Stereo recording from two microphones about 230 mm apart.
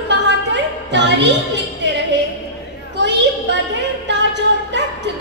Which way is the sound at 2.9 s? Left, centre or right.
Right.